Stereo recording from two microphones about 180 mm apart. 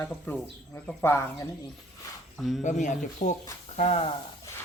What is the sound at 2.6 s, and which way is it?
Speech, 45° left (ahead or behind).